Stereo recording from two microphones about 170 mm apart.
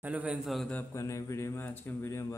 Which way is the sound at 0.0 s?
10° right (ahead or behind).